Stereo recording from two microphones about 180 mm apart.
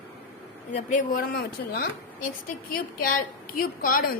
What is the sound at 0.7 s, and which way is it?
A woman's voice, 40° left (ahead or behind).